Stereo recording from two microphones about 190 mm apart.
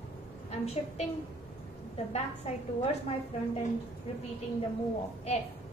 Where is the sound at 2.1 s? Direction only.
35° left (ahead or behind).